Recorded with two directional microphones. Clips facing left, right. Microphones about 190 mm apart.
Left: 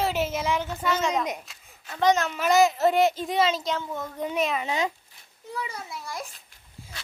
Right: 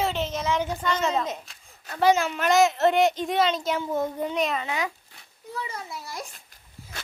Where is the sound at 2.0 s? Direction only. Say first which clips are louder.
Right 1 dB; 5° right (ahead or behind).